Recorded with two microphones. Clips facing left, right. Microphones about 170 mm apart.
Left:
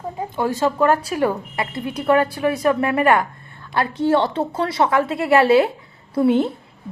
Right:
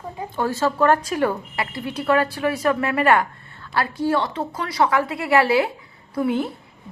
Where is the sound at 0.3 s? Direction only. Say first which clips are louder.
Left 2 dB; 15° left (ahead or behind).